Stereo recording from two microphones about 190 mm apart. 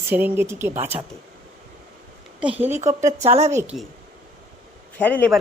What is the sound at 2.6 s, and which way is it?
Speech, 35° right (ahead or behind).